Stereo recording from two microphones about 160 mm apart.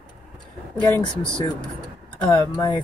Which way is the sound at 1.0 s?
30° left (ahead or behind).